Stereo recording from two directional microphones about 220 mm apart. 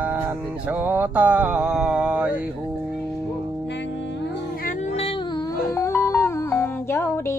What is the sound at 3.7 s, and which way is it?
Music, 55° left (ahead or behind).